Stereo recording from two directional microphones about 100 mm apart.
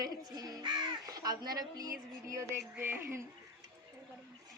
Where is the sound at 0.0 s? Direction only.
40° right (ahead or behind).